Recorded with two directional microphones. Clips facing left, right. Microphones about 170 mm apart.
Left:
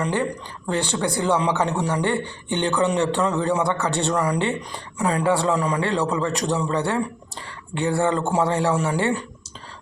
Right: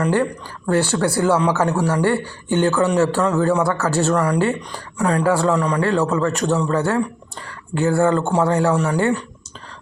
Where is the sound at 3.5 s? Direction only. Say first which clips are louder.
Right 3 dB; 20° left (ahead or behind).